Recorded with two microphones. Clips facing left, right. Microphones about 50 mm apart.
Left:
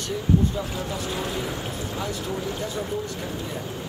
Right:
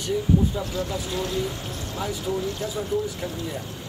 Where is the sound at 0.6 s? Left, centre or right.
Centre.